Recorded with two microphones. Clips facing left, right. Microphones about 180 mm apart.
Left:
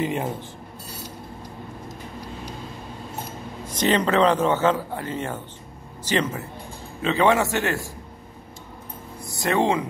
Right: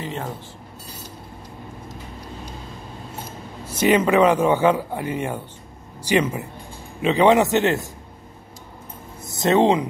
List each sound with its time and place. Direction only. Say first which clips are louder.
0.0 s speech: left 5 dB; 15° left (ahead or behind)
3.6 s a man's voice: right 4 dB; 10° right (ahead or behind)
9.3 s speech: right 5 dB; 20° right (ahead or behind)